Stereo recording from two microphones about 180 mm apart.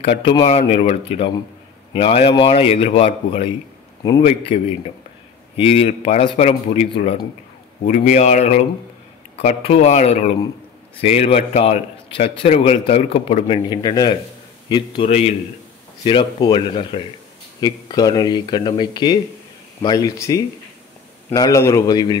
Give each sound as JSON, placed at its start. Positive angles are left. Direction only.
{"t": 0.5, "sound": "a man's voice", "side_deg": 35}
{"t": 5.6, "sound": "a man's voice", "side_deg": 35}
{"t": 15.0, "sound": "a man's voice", "side_deg": 35}